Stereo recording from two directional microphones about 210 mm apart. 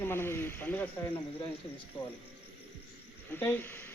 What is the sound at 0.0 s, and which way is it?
Speech, 10° left (ahead or behind).